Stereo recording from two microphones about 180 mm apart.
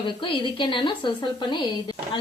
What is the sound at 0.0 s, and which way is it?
A woman's voice, 25° left (ahead or behind).